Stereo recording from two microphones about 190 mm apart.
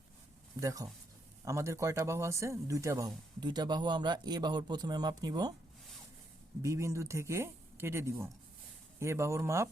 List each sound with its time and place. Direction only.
0.6 s speech: 20° right (ahead or behind)
6.6 s speech: 15° right (ahead or behind)